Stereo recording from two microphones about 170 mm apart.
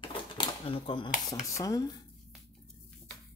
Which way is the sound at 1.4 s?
20° left (ahead or behind).